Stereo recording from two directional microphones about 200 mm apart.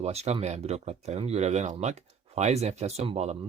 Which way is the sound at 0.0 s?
30° right (ahead or behind).